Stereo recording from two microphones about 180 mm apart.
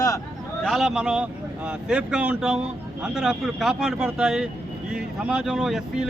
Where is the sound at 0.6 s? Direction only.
Centre (ahead or behind).